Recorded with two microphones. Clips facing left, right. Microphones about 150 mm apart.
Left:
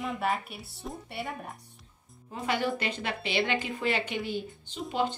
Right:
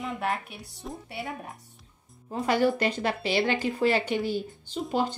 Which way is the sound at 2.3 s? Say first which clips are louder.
Right 6 dB; 40° right (ahead or behind).